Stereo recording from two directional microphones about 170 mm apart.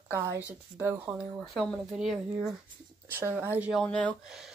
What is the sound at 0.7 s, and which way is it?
Speech, 10° right (ahead or behind).